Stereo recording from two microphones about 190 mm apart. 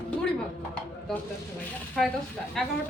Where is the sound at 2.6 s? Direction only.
Centre (ahead or behind).